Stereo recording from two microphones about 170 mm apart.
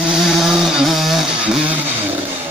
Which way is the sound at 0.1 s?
Centre (ahead or behind).